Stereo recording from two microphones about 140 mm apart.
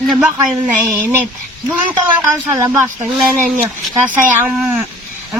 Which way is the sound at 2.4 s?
15° right (ahead or behind).